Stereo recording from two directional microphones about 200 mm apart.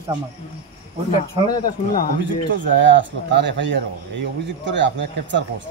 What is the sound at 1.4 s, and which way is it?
Speech, 20° left (ahead or behind).